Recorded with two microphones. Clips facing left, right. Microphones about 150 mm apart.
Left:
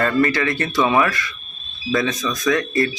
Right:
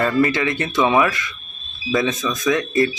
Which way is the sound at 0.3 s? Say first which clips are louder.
Even; 20° right (ahead or behind).